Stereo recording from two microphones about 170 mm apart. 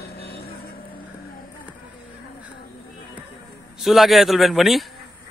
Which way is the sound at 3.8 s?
Centre (ahead or behind).